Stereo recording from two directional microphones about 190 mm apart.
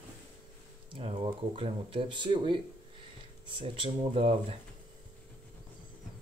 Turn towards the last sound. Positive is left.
turn(degrees=-30)  # may be behind; listen again after turning